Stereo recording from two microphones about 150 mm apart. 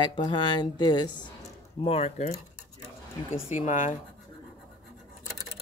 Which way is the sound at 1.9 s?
45° left (ahead or behind).